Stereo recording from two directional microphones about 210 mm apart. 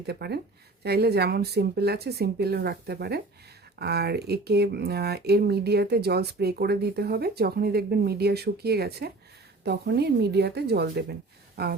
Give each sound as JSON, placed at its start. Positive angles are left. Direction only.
{"t": 0.0, "sound": "speech", "side_deg": -50}